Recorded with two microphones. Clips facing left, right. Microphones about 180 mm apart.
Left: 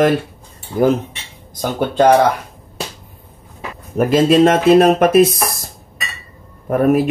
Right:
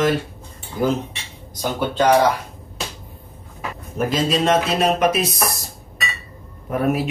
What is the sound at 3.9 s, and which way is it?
Mantra, 55° left (ahead or behind).